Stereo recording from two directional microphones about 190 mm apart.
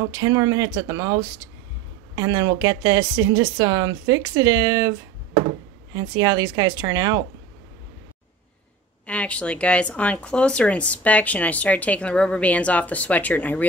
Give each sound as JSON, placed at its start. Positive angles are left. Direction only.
{"t": 0.0, "sound": "a woman's voice", "side_deg": -15}
{"t": 5.9, "sound": "a woman's voice", "side_deg": -20}
{"t": 9.0, "sound": "speech", "side_deg": 5}